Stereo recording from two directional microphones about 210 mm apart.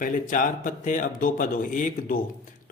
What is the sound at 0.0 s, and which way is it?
Speech, 40° left (ahead or behind).